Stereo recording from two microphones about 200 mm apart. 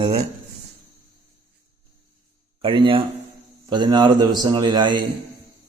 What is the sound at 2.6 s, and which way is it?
A man's voice, 25° right (ahead or behind).